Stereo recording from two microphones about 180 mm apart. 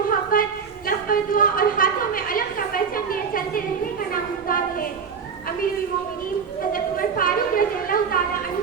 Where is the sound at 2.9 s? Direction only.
55° left (ahead or behind).